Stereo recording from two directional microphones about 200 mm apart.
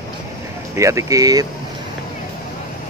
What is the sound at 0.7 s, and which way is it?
Speech, 15° right (ahead or behind).